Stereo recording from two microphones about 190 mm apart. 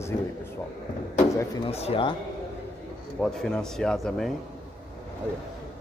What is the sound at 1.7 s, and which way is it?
Speech, 30° left (ahead or behind).